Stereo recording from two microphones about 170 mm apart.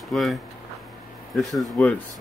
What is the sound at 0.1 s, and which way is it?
Speech, centre (ahead or behind).